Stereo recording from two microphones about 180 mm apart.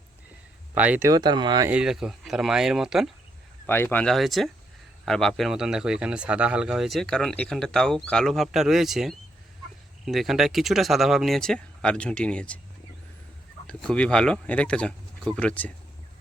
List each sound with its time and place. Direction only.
0.7 s speech: 10° right (ahead or behind)
1.7 s speech: 5° right (ahead or behind)
3.7 s speech: 10° left (ahead or behind)
13.7 s speech: 5° left (ahead or behind)